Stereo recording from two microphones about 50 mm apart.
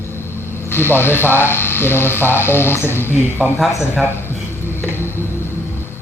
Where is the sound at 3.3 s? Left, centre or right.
Left.